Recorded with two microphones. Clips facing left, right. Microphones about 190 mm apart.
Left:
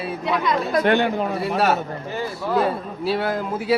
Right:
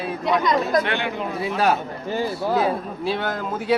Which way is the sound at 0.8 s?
45° left (ahead or behind).